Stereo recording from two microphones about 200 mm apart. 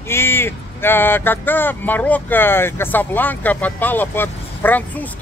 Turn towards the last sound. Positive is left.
turn(degrees=10)  # may be behind; listen again after turning